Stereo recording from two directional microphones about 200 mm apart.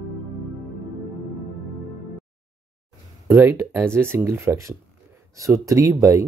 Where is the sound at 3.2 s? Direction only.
10° right (ahead or behind).